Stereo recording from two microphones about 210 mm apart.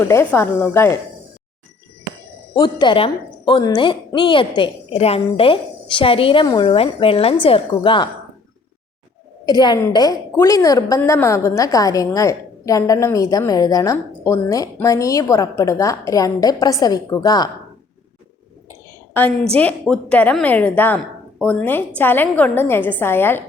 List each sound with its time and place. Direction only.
0.0 s a woman's voice: 10° left (ahead or behind)
2.6 s a woman's voice: 20° left (ahead or behind)
9.5 s a woman's voice: 20° left (ahead or behind)
19.1 s a woman's voice: 10° left (ahead or behind)